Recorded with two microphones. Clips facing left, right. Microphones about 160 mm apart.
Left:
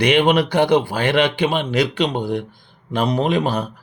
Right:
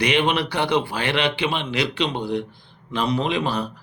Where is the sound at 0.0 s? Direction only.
50° left (ahead or behind).